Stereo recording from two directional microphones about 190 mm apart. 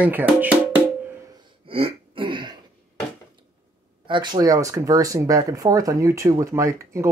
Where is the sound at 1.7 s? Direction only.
30° right (ahead or behind).